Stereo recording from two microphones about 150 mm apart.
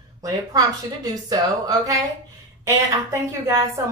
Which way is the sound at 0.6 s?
25° right (ahead or behind).